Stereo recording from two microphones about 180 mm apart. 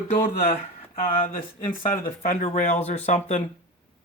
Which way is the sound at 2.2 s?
50° left (ahead or behind).